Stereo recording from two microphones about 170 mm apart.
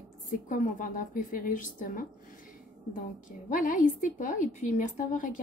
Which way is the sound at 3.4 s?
50° left (ahead or behind).